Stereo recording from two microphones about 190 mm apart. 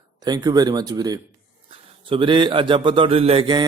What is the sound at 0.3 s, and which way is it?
A man's voice, 20° right (ahead or behind).